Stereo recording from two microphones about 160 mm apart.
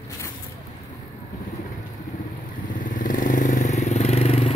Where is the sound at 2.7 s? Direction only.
55° left (ahead or behind).